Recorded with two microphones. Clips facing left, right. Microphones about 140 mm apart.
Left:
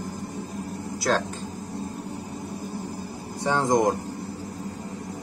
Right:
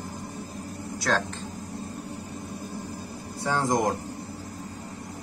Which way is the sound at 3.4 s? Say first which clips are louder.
Left 3 dB; 20° left (ahead or behind).